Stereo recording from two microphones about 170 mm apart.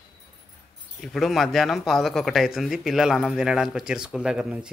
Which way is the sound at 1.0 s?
Centre (ahead or behind).